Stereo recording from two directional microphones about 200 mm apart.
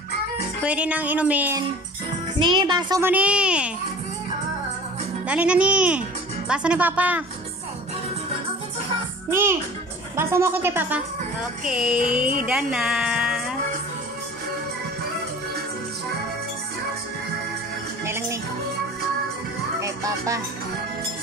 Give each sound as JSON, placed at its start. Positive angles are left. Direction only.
{"t": 0.6, "sound": "a child's voice", "side_deg": -5}
{"t": 2.3, "sound": "a child's voice", "side_deg": -25}
{"t": 5.2, "sound": "a child's voice", "side_deg": -5}
{"t": 9.3, "sound": "a child's voice", "side_deg": -10}
{"t": 12.2, "sound": "speech", "side_deg": -45}
{"t": 12.4, "sound": "speech", "side_deg": -5}
{"t": 18.0, "sound": "music", "side_deg": -15}
{"t": 19.8, "sound": "music", "side_deg": -15}